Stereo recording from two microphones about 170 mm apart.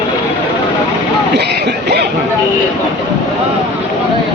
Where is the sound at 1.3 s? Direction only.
70° right (ahead or behind).